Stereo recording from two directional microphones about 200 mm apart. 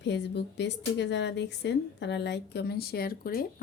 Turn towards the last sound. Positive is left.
turn(degrees=45)  # may be behind; listen again after turning